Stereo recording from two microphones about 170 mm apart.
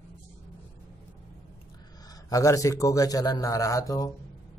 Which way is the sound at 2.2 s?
20° left (ahead or behind).